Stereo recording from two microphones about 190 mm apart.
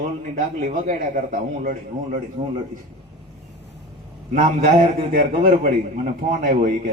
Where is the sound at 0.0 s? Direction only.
40° right (ahead or behind).